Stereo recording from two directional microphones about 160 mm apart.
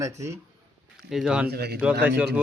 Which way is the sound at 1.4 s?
80° right.